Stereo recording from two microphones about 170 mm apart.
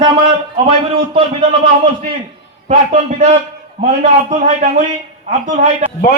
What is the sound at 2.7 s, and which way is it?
Speech, 45° right (ahead or behind).